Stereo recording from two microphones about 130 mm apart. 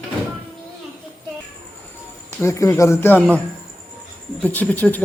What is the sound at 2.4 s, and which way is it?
Speech, 20° left (ahead or behind).